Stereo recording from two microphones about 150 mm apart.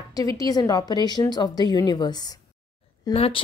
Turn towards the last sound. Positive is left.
turn(degrees=40)  # may be behind; listen again after turning